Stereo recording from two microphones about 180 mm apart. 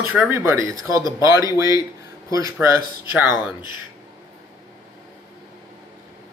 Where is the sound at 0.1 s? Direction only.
5° right (ahead or behind).